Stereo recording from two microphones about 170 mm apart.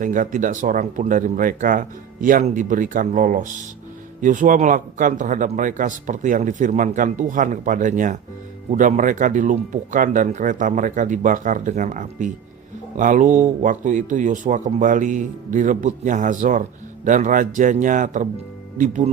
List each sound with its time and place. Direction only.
0.0 s speech: 50° right (ahead or behind)